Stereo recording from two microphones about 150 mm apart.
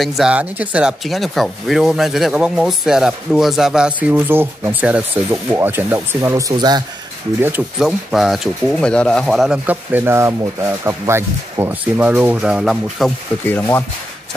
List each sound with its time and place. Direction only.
0.0 s speech: centre (ahead or behind)
6.5 s speech: 25° right (ahead or behind)
7.8 s speech: centre (ahead or behind)
13.5 s speech: 15° left (ahead or behind)